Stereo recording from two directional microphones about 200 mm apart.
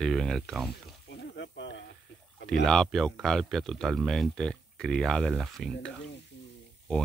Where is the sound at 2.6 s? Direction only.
5° left (ahead or behind).